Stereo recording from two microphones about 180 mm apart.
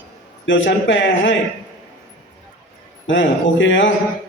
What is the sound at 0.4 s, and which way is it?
Speech, 90° left.